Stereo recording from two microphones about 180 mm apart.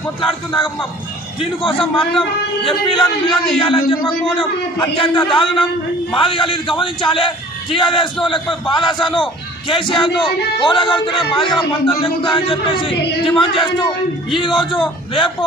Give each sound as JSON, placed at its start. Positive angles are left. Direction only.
{"t": 1.4, "sound": "a man's voice", "side_deg": 30}